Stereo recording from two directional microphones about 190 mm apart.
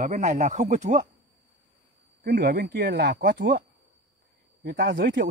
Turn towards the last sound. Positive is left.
turn(degrees=-50)  # may be behind; listen again after turning